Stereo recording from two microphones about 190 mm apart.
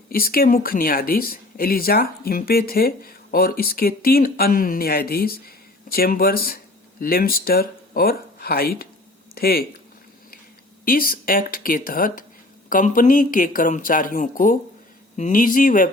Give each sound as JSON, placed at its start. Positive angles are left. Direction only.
{"t": 0.1, "sound": "speech", "side_deg": 50}
{"t": 10.8, "sound": "speech", "side_deg": 50}